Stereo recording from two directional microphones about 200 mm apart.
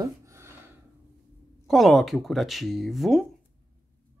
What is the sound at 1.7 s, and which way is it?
Speech, centre (ahead or behind).